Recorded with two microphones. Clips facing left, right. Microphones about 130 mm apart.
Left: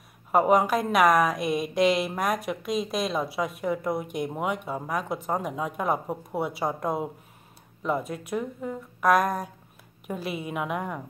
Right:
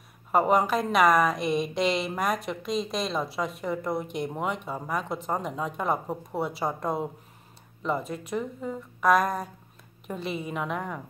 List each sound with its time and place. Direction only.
0.3 s a woman's voice: centre (ahead or behind)